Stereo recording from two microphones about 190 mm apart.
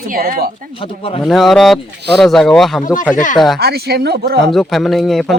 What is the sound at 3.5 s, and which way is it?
Speech, 55° right (ahead or behind).